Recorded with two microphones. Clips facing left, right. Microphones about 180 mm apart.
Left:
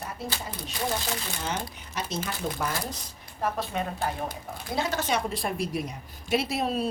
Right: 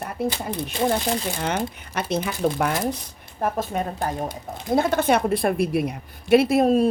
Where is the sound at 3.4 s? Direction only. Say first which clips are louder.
Right 5 dB; 45° right (ahead or behind).